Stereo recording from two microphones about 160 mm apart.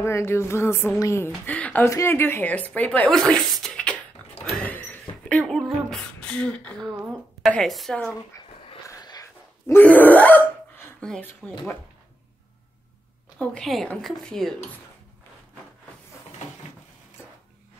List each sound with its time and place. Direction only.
0.0 s speech: 15° left (ahead or behind)
5.5 s beatboxing: centre (ahead or behind)
7.4 s speech: centre (ahead or behind)
8.3 s a sound: 20° left (ahead or behind)
13.4 s speech: 5° left (ahead or behind)